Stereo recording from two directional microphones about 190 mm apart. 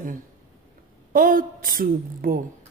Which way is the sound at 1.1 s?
45° right (ahead or behind).